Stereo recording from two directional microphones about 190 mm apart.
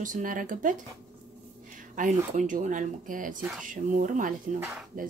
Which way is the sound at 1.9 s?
40° right (ahead or behind).